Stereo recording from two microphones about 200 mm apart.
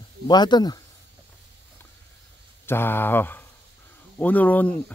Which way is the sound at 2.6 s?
10° left (ahead or behind).